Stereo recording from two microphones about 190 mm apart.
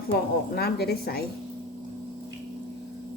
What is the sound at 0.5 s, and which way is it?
Speech, 55° left (ahead or behind).